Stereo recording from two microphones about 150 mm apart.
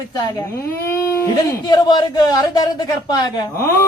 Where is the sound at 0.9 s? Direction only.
20° left (ahead or behind).